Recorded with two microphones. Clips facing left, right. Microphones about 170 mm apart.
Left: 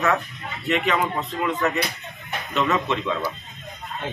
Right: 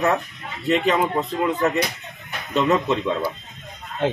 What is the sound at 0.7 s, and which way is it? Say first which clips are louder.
Speech: right 3 dB; 35° right (ahead or behind).